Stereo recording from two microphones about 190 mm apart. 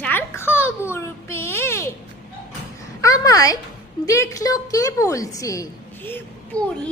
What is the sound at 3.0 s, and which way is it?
A woman's voice, 15° left (ahead or behind).